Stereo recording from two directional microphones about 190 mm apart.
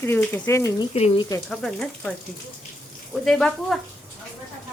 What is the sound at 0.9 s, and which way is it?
Speech, 30° left (ahead or behind).